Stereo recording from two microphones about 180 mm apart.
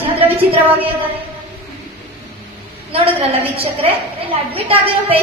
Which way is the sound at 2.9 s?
35° right (ahead or behind).